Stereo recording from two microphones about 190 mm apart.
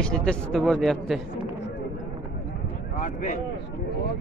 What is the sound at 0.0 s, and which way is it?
Speech, 5° left (ahead or behind).